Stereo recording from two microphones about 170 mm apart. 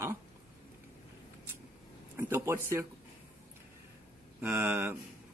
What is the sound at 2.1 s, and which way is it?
Speech, 15° right (ahead or behind).